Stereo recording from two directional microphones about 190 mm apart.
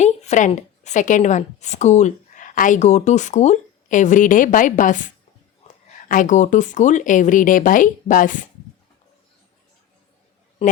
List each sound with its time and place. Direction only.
0.0 s a woman's voice: 35° left (ahead or behind)